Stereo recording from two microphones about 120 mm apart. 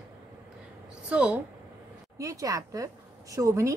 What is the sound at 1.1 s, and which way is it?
Speech, 10° right (ahead or behind).